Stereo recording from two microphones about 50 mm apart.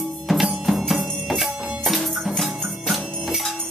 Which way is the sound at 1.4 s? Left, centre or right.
Centre.